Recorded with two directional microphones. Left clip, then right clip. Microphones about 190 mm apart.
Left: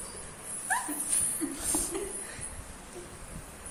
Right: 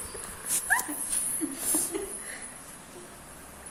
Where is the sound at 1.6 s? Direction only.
25° right (ahead or behind).